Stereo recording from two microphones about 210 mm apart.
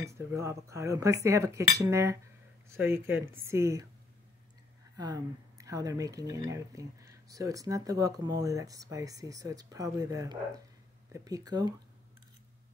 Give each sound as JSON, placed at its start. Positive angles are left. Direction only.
{"t": 0.0, "sound": "speech", "side_deg": -15}
{"t": 4.9, "sound": "speech", "side_deg": -15}